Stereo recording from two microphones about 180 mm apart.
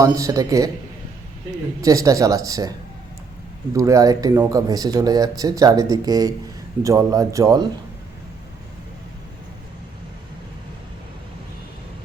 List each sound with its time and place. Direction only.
0.0 s speech: 20° right (ahead or behind)
1.8 s speech: 20° right (ahead or behind)